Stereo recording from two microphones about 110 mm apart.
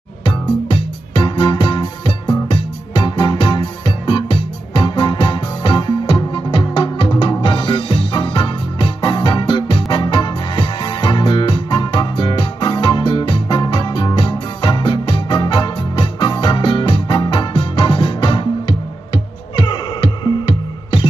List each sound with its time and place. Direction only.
0.2 s music: 45° left (ahead or behind)